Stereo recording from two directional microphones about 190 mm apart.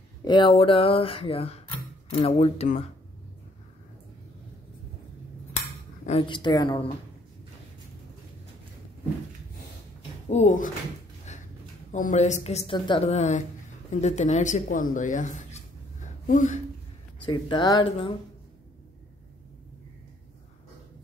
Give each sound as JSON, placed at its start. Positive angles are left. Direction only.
{"t": 0.2, "sound": "speech", "side_deg": 25}
{"t": 6.0, "sound": "speech", "side_deg": 30}
{"t": 10.3, "sound": "speech", "side_deg": 40}
{"t": 11.3, "sound": "a sound", "side_deg": 35}
{"t": 11.9, "sound": "speech", "side_deg": 40}
{"t": 12.7, "sound": "speech", "side_deg": 25}
{"t": 16.0, "sound": "a sound", "side_deg": 40}
{"t": 17.3, "sound": "speech", "side_deg": 25}